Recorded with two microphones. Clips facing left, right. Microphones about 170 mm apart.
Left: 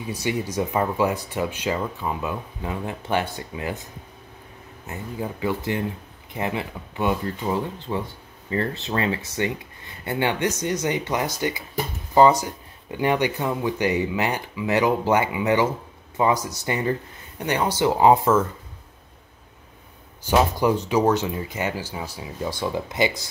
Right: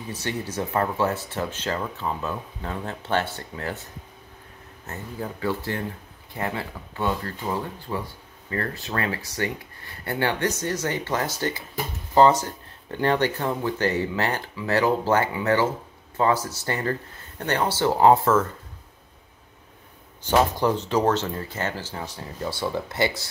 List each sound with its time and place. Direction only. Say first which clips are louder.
0.0 s speech: left 4 dB; 10° left (ahead or behind)
4.8 s speech: left 2 dB; 15° left (ahead or behind)
20.2 s speech: left 1 dB; 10° left (ahead or behind)